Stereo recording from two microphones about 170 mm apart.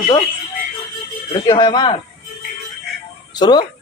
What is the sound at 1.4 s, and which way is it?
Speech, 25° left (ahead or behind).